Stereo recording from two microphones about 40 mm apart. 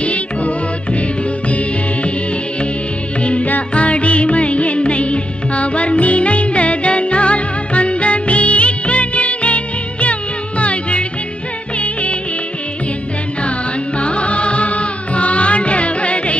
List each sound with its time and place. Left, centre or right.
0.0 s music: left
3.2 s music: left
13.9 s music: left